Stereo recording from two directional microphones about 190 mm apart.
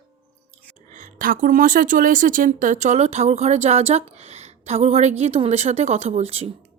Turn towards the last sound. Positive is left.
turn(degrees=-35)  # may be behind; listen again after turning